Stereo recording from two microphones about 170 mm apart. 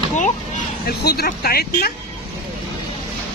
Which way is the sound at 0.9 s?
70° left (ahead or behind).